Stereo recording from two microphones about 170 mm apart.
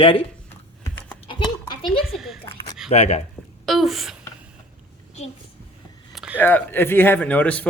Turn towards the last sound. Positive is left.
turn(degrees=10)  # may be behind; listen again after turning